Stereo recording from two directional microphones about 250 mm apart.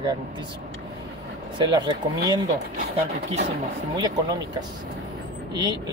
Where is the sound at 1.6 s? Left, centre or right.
Centre.